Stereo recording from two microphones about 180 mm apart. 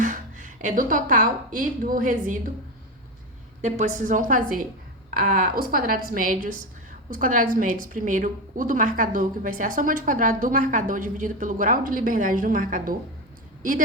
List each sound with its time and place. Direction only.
0.0 s a woman's voice: 45° right (ahead or behind)
3.6 s a woman's voice: 45° right (ahead or behind)